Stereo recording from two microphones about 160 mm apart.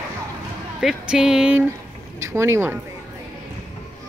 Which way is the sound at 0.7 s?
5° right (ahead or behind).